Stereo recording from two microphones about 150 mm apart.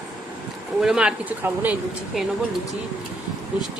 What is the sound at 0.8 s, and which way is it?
Speech, 5° right (ahead or behind).